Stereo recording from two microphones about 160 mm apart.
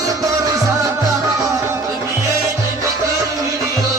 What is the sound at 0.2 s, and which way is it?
Music, 20° right (ahead or behind).